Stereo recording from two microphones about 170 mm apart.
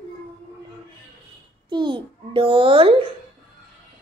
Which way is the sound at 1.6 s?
30° right (ahead or behind).